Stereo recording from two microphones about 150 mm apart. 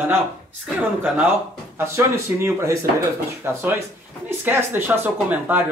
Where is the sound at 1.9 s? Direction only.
20° right (ahead or behind).